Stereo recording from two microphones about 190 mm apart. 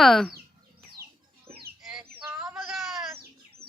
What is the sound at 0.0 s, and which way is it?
Speech, centre (ahead or behind).